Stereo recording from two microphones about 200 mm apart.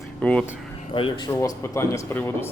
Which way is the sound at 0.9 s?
25° left (ahead or behind).